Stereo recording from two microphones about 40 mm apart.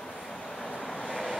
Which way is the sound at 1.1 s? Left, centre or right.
Centre.